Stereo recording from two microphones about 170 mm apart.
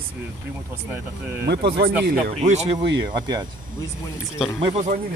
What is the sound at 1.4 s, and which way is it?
Speech, 75° right (ahead or behind).